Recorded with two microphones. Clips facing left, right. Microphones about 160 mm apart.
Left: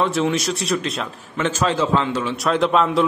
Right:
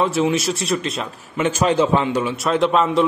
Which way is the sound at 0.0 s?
5° right (ahead or behind).